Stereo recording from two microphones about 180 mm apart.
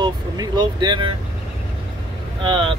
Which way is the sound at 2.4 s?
30° right (ahead or behind).